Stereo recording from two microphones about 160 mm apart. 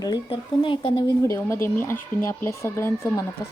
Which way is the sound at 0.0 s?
30° left (ahead or behind).